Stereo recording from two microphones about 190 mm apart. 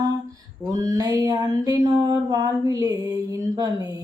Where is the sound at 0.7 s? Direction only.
20° right (ahead or behind).